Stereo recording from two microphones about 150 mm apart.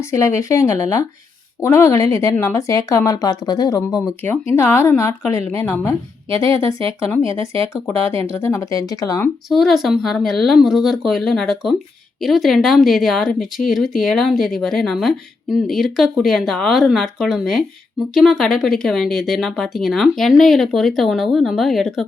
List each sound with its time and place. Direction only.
0.0 s a woman's voice: 20° left (ahead or behind)
6.3 s speech: 35° right (ahead or behind)
7.1 s speech: 20° left (ahead or behind)
7.3 s speech: 40° right (ahead or behind)
7.7 s speech: 20° left (ahead or behind)
9.5 s speech: centre (ahead or behind)